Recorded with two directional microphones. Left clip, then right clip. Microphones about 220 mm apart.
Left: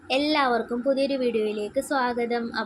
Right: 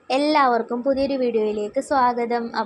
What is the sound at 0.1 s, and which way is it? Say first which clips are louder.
A woman's voice: right 5 dB; 15° right (ahead or behind).